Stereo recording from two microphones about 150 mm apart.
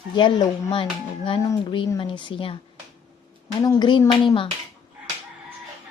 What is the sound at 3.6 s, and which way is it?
Speech, 30° left (ahead or behind).